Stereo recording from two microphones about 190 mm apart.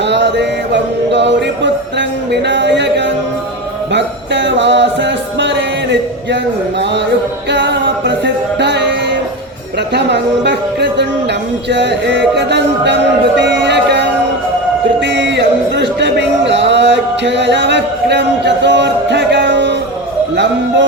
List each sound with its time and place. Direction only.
0.0 s music: 65° right (ahead or behind)
3.9 s music: 70° right (ahead or behind)
7.5 s music: 65° right (ahead or behind)
9.9 s speech: 65° right (ahead or behind)
15.0 s a sound: 65° right (ahead or behind)
20.3 s speech: 65° right (ahead or behind)